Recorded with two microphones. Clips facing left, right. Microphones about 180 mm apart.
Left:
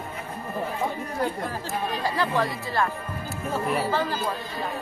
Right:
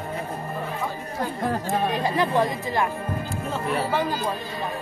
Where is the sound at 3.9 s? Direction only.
15° right (ahead or behind).